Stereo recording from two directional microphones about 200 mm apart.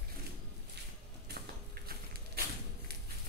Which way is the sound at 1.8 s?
55° right (ahead or behind).